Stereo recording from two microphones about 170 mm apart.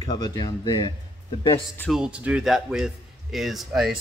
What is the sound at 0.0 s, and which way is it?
Speech, 25° left (ahead or behind).